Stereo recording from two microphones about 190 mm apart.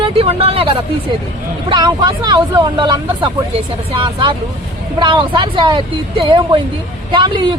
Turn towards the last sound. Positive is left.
turn(degrees=-25)  # may be behind; listen again after turning